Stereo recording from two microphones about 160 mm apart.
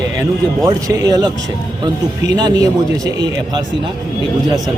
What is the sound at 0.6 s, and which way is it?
Speech, 20° right (ahead or behind).